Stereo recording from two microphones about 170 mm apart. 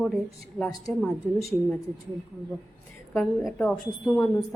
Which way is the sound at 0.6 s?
Centre (ahead or behind).